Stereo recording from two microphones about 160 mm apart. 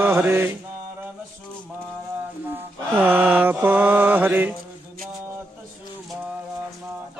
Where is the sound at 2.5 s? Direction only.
10° right (ahead or behind).